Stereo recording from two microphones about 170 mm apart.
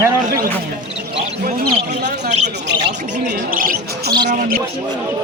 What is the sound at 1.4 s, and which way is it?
Basketball bounce, 60° right (ahead or behind).